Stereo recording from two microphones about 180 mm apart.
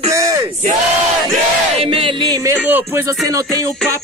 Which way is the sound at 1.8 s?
30° right (ahead or behind).